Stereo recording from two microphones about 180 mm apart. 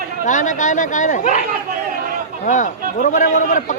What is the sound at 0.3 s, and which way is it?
A man's voice, 45° left (ahead or behind).